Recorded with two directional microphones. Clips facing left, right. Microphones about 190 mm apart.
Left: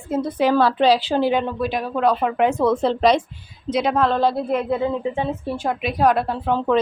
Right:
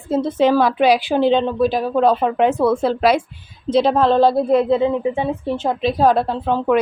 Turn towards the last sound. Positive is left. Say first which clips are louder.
# right 3 dB
turn(degrees=-25)  # may be behind; listen again after turning